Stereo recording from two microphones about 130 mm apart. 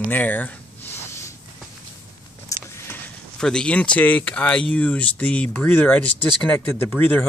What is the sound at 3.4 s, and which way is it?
Speech, 5° left (ahead or behind).